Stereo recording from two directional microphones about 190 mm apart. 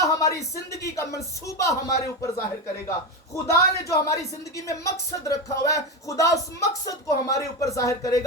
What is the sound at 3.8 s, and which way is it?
Speech, 15° left (ahead or behind).